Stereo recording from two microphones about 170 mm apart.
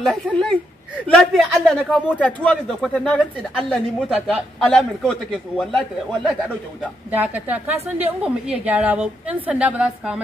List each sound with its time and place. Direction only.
0.0 s a man's voice: 5° left (ahead or behind)
7.1 s a woman's voice: 10° right (ahead or behind)
7.7 s a woman's voice: 35° right (ahead or behind)
8.2 s a woman's voice: 5° right (ahead or behind)